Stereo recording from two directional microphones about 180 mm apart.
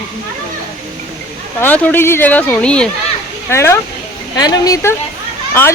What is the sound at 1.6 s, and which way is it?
A woman's voice, 10° left (ahead or behind).